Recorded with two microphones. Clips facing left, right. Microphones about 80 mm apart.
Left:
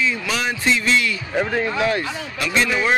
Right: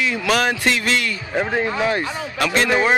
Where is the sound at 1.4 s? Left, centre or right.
Centre.